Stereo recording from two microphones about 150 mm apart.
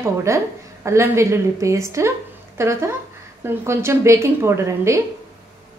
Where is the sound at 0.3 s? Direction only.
20° right (ahead or behind).